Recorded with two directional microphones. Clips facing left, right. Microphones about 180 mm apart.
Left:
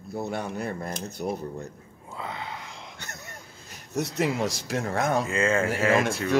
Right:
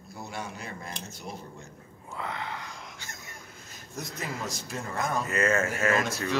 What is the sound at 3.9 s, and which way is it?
Speech, 75° left (ahead or behind).